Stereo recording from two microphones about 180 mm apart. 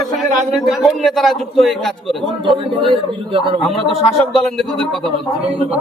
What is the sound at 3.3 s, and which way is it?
Speech, 30° right (ahead or behind).